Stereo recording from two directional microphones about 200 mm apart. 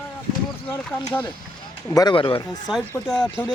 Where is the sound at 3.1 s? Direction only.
5° left (ahead or behind).